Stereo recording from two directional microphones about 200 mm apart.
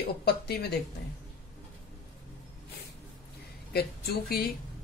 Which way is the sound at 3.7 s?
50° left (ahead or behind).